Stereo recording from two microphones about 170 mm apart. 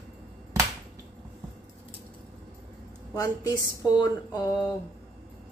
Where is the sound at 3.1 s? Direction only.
20° left (ahead or behind).